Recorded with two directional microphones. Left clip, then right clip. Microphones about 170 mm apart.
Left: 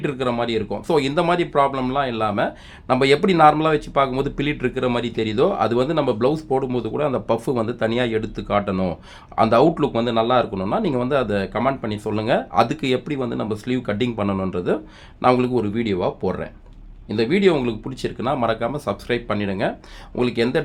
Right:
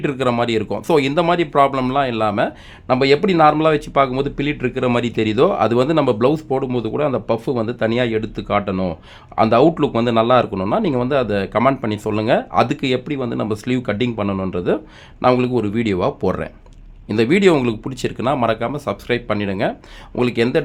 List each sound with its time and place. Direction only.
0.0 s speech: 25° right (ahead or behind)
4.2 s speech: 15° right (ahead or behind)
7.3 s speech: 10° right (ahead or behind)
15.7 s speech: 35° right (ahead or behind)